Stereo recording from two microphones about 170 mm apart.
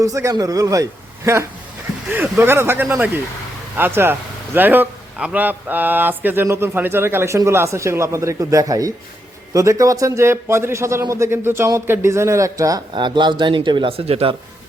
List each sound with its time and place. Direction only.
0.0 s a man's voice: 20° right (ahead or behind); by 14.3 s 35° right (ahead or behind)